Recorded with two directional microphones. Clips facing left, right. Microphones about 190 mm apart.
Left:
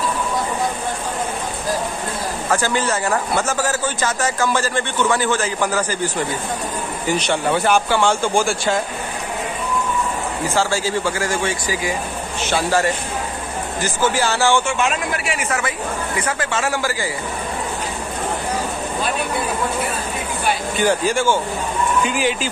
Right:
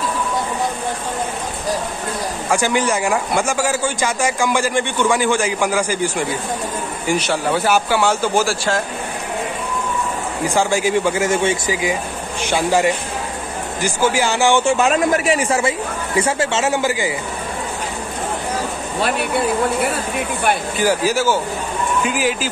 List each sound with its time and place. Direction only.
2.5 s a man's voice: 15° right (ahead or behind)
10.5 s a man's voice: 15° right (ahead or behind)
14.6 s speech: 35° right (ahead or behind); by 17.1 s 20° right (ahead or behind)
18.9 s speech: 70° right (ahead or behind)
20.7 s speech: 5° right (ahead or behind)